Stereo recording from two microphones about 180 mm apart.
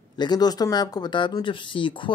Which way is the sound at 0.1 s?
25° left (ahead or behind).